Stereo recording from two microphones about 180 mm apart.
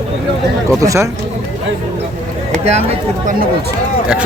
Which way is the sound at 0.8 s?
15° right (ahead or behind).